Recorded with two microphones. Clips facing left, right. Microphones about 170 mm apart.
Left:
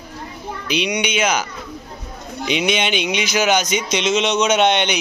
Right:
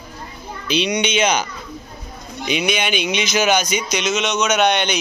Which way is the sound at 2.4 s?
20° left (ahead or behind).